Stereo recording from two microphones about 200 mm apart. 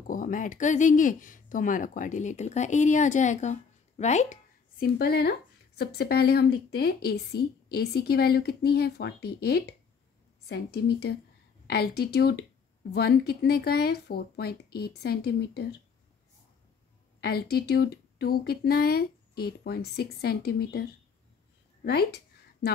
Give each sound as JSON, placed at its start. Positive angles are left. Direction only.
{"t": 0.0, "sound": "a woman's voice", "side_deg": 40}
{"t": 17.2, "sound": "a woman's voice", "side_deg": 50}